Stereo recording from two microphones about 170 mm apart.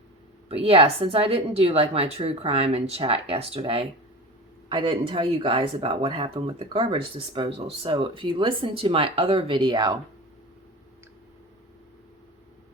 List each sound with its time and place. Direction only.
0.4 s a woman's voice: 35° right (ahead or behind)